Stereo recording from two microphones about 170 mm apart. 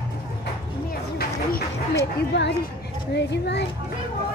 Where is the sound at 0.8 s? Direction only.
60° left (ahead or behind).